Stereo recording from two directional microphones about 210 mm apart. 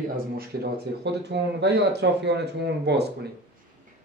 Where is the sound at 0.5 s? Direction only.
50° right (ahead or behind).